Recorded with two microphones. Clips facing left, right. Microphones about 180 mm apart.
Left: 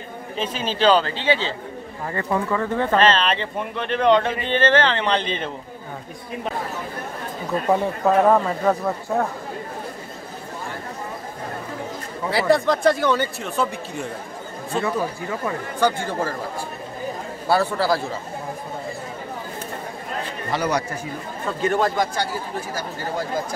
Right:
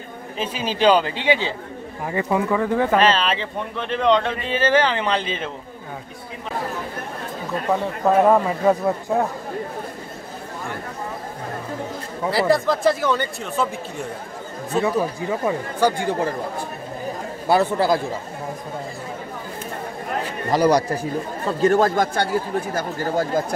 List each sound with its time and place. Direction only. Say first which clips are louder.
0.4 s speech: right 1 dB; 10° right (ahead or behind)
8.0 s speech: right 3 dB; 5° right (ahead or behind)
12.3 s speech: even; centre (ahead or behind)
15.2 s speech: right 4 dB; 15° right (ahead or behind)
20.5 s a man's voice: right 6 dB; 35° right (ahead or behind); by 22.3 s 55° right (ahead or behind)